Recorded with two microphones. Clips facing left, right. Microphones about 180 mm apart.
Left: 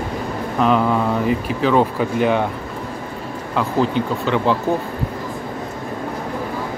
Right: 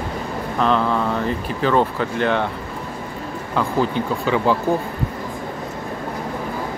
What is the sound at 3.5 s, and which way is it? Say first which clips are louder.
Speech: left 2 dB; centre (ahead or behind).